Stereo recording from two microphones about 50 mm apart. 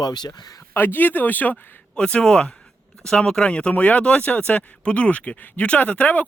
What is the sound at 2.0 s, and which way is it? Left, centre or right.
Speech, left.